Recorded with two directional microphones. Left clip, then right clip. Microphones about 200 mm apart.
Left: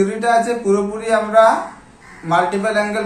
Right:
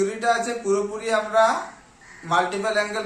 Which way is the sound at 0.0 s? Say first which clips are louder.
Left 6 dB; 20° right (ahead or behind).